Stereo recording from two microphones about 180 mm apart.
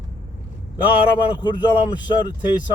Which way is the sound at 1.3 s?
25° left (ahead or behind).